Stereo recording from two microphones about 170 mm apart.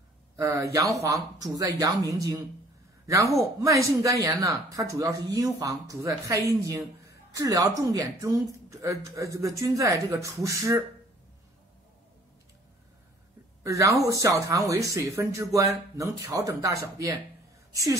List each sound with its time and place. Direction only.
0.4 s speech: 15° right (ahead or behind)
13.7 s speech: 20° right (ahead or behind)